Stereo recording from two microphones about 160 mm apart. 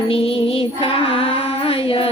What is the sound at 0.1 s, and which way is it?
Music, 35° left (ahead or behind).